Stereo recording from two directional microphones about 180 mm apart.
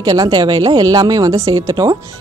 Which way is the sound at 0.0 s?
20° right (ahead or behind).